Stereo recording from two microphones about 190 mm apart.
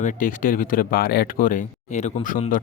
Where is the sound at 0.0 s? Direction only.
45° left (ahead or behind).